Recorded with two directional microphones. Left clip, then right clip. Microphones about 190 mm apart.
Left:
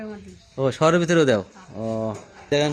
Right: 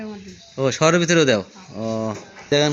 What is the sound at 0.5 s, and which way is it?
Speech, 10° left (ahead or behind).